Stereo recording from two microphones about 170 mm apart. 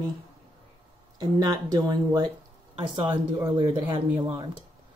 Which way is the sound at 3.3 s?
20° right (ahead or behind).